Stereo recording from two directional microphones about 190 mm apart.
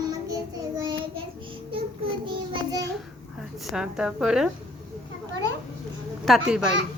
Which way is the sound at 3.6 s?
5° right (ahead or behind).